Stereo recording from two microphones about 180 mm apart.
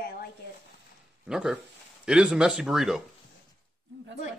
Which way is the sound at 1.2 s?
5° right (ahead or behind).